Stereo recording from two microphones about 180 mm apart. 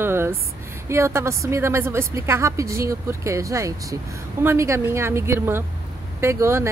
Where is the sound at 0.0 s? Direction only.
15° right (ahead or behind).